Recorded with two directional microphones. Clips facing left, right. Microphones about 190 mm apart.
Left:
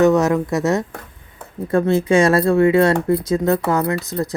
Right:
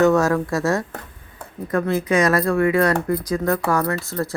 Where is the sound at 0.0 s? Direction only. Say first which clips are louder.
Left 2 dB; 20° left (ahead or behind).